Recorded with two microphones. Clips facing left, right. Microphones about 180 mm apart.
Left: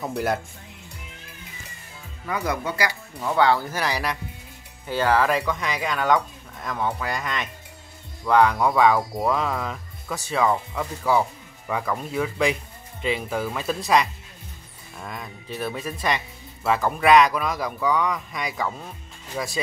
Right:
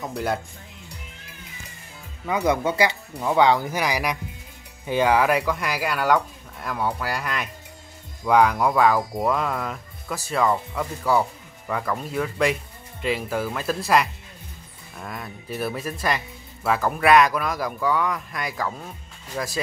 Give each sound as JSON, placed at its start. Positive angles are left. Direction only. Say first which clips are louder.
{"t": 0.0, "sound": "speech", "louder": "left 1 dB", "side_deg": 0}
{"t": 2.2, "sound": "speech", "louder": "right 5 dB", "side_deg": -20}